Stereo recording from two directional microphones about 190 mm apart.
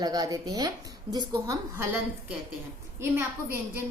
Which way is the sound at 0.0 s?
20° right (ahead or behind).